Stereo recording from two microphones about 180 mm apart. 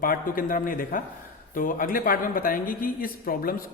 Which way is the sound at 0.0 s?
50° left (ahead or behind).